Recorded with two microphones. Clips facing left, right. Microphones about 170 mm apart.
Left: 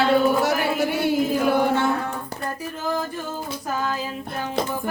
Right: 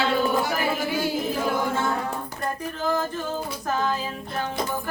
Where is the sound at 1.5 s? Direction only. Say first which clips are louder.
Left 5 dB; 65° left (ahead or behind).